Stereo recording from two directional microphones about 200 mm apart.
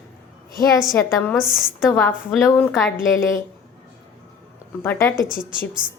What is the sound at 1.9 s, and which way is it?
A woman's voice, 10° left (ahead or behind).